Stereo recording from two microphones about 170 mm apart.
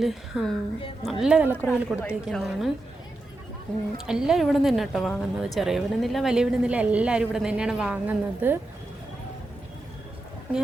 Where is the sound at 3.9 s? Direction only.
5° right (ahead or behind).